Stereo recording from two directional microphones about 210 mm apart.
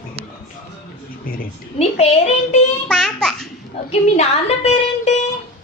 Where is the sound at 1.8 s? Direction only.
30° left (ahead or behind).